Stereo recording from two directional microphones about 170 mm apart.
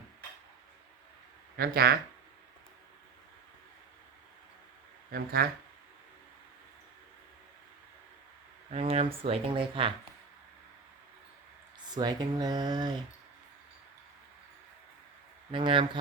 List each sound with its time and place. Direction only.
1.5 s speech: 65° right (ahead or behind)
5.1 s speech: 65° right (ahead or behind)
8.7 s speech: 35° right (ahead or behind)
11.9 s speech: 25° right (ahead or behind)
15.5 s speech: 30° right (ahead or behind)